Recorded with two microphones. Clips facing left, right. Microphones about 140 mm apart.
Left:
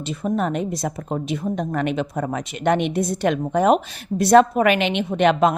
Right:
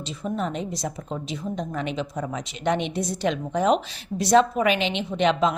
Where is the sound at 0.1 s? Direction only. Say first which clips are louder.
Left 6 dB; 55° left (ahead or behind).